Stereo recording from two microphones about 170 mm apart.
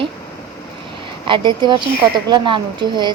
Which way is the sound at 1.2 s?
30° right (ahead or behind).